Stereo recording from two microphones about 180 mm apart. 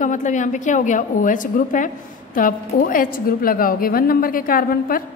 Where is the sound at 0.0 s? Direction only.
45° left (ahead or behind).